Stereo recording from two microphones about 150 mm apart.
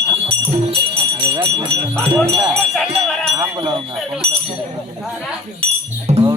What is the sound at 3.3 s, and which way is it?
Speech, 20° right (ahead or behind).